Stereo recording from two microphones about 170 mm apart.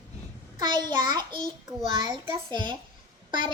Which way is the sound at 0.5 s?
25° right (ahead or behind).